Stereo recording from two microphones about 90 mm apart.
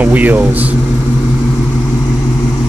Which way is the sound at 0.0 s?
20° right (ahead or behind).